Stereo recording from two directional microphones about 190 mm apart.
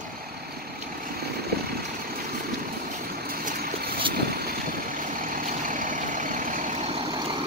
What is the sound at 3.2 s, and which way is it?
Vehicle, 50° right (ahead or behind).